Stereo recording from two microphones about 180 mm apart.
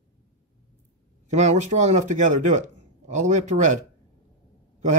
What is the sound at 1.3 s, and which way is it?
Speech, 40° right (ahead or behind).